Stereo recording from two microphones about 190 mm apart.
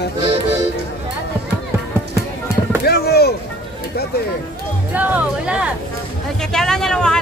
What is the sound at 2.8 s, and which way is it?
Chop, 55° left (ahead or behind).